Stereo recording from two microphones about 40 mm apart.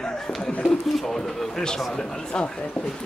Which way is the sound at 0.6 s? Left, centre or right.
Centre.